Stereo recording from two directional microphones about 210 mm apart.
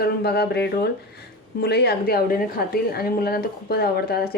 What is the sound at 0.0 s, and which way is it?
A woman's voice, 50° left (ahead or behind).